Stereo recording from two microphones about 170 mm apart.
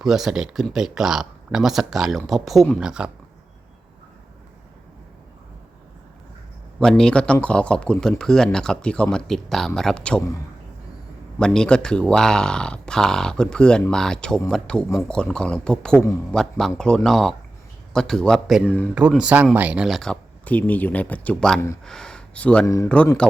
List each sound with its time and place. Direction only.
0.0 s speech: centre (ahead or behind)
6.7 s speech: 5° left (ahead or behind)
11.3 s speech: 5° left (ahead or behind)
21.8 s a sound: 5° left (ahead or behind)
22.6 s speech: 20° left (ahead or behind)